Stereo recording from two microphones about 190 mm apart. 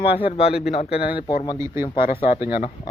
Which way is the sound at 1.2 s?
25° left (ahead or behind).